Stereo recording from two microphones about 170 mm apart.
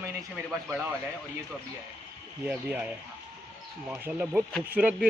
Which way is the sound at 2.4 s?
10° right (ahead or behind).